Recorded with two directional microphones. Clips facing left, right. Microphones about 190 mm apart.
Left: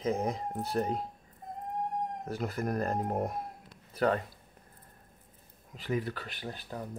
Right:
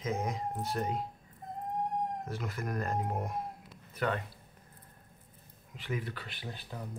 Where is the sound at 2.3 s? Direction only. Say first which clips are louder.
Left 9 dB; 40° left (ahead or behind).